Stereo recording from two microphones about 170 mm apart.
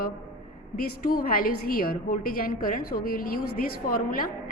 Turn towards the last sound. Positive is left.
turn(degrees=60)  # may be behind; listen again after turning